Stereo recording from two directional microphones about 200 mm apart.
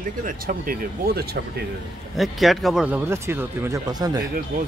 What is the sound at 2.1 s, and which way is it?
Speech, centre (ahead or behind).